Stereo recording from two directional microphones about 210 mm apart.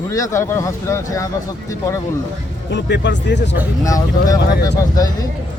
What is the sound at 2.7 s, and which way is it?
Speech, 55° left (ahead or behind).